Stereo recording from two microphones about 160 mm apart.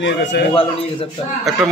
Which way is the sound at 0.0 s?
90° left.